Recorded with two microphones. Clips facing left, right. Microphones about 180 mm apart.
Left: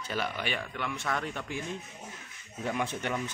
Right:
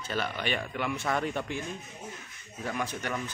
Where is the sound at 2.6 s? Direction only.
25° left (ahead or behind).